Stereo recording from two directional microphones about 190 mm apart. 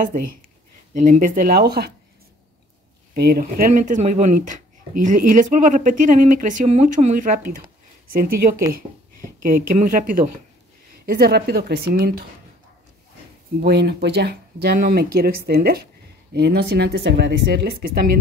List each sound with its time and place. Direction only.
0.9 s speech: 40° right (ahead or behind)
3.2 s speech: 55° right (ahead or behind)
13.6 s speech: 60° right (ahead or behind)